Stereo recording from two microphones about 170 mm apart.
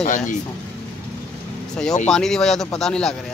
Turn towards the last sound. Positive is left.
turn(degrees=5)  # may be behind; listen again after turning